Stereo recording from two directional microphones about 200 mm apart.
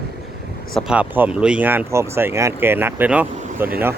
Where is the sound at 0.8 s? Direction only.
5° right (ahead or behind).